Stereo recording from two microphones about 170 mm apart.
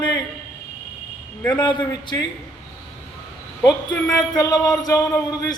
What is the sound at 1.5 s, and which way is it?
Speech, 25° left (ahead or behind).